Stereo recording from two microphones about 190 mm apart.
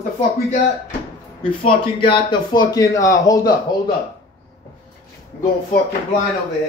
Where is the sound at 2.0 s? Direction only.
25° left (ahead or behind).